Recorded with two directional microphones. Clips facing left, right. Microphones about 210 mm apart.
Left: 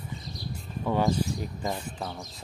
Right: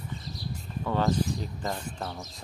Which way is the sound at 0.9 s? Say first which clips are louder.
Left 1 dB; 10° left (ahead or behind).